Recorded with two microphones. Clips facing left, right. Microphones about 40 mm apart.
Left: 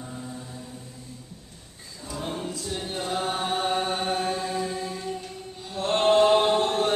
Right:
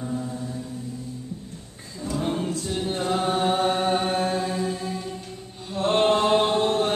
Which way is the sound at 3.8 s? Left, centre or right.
Centre.